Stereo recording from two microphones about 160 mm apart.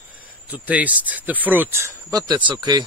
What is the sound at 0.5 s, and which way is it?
A man's voice, 10° right (ahead or behind).